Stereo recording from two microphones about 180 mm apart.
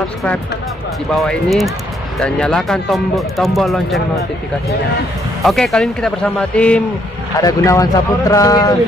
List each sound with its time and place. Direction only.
1.1 s speech: centre (ahead or behind)
5.4 s speech: centre (ahead or behind)
7.3 s speech: 20° left (ahead or behind)